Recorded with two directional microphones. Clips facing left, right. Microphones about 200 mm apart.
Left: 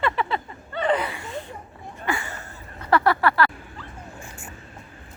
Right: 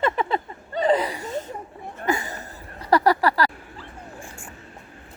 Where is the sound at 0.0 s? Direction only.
40° right (ahead or behind).